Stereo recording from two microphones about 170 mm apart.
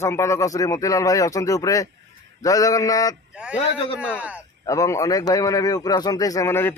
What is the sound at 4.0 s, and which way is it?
Speech, 5° right (ahead or behind).